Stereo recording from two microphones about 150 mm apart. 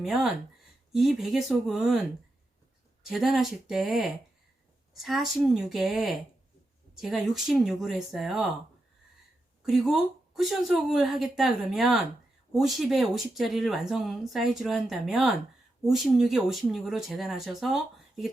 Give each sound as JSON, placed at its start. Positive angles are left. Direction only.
{"t": 0.0, "sound": "speech", "side_deg": 0}
{"t": 3.0, "sound": "speech", "side_deg": 0}
{"t": 9.6, "sound": "speech", "side_deg": 0}